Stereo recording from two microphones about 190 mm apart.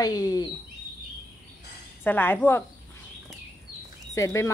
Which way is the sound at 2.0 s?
10° left (ahead or behind).